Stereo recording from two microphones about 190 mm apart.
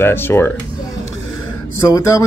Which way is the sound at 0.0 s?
10° left (ahead or behind).